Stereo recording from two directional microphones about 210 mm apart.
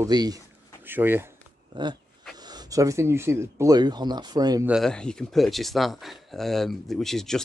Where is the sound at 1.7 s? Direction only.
20° right (ahead or behind).